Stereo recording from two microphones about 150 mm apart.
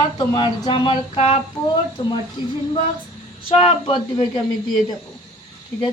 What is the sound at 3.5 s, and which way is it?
Speech, 40° left (ahead or behind).